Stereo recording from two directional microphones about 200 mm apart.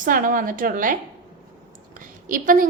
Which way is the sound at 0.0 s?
45° right (ahead or behind).